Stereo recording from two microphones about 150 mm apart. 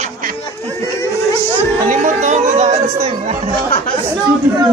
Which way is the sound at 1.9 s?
50° right (ahead or behind).